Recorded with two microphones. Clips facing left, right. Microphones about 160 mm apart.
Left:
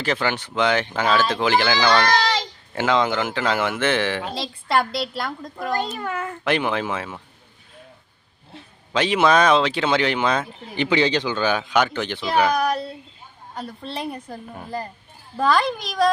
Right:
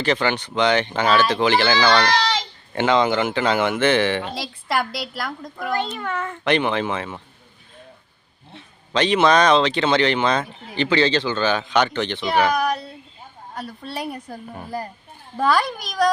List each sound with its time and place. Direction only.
0.0 s speech: 5° left (ahead or behind)
2.0 s speech: 45° left (ahead or behind)
2.7 s speech: centre (ahead or behind)
4.7 s a woman's voice: 25° left (ahead or behind)
5.8 s speech: 10° left (ahead or behind)
8.9 s speech: 5° left (ahead or behind)